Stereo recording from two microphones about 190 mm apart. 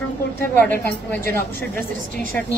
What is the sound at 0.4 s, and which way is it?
A woman's voice, 10° left (ahead or behind).